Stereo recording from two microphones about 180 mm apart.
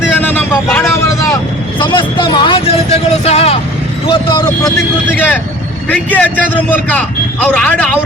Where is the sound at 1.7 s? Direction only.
25° left (ahead or behind).